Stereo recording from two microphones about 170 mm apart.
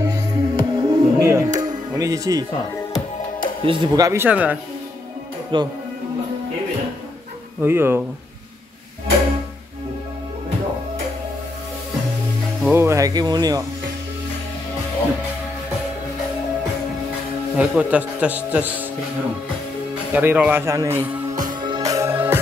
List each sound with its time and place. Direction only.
0.0 s music: 20° right (ahead or behind)
3.6 s speech: 30° right (ahead or behind); by 4.6 s 10° right (ahead or behind)
5.5 s speech: 30° right (ahead or behind)
7.6 s a man's voice: 15° right (ahead or behind)
12.7 s speech: 15° right (ahead or behind)
17.6 s a man's voice: 5° right (ahead or behind)
20.1 s a man's voice: 10° right (ahead or behind)
21.5 s music: 25° right (ahead or behind)